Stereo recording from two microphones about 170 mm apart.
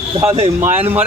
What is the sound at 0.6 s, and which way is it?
Speech, 10° right (ahead or behind).